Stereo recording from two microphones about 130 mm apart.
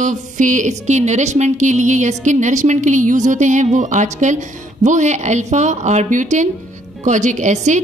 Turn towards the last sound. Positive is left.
turn(degrees=-70)  # may be behind; listen again after turning